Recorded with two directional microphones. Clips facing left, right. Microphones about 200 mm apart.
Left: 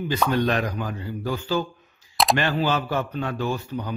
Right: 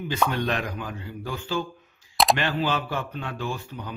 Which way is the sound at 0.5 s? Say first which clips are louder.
Left 4 dB; 40° left (ahead or behind).